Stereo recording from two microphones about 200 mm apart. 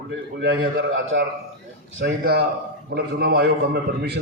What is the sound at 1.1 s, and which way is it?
A man's voice, 60° right (ahead or behind).